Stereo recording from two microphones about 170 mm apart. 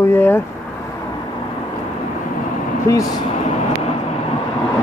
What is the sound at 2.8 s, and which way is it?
Speech, 20° left (ahead or behind).